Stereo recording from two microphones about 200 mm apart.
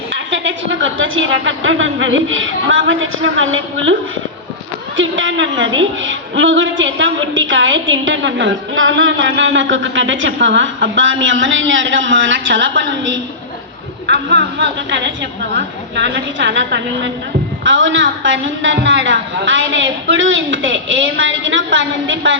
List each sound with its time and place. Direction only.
0.1 s a woman's voice: 65° right (ahead or behind)
4.9 s a woman's voice: 75° right (ahead or behind)